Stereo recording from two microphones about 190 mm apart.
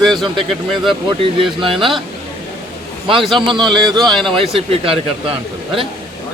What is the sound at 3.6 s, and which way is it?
Speech, centre (ahead or behind).